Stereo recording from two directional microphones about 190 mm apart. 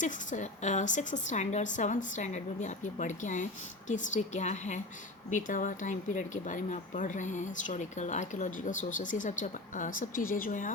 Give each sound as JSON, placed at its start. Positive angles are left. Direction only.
{"t": 0.0, "sound": "speech", "side_deg": 40}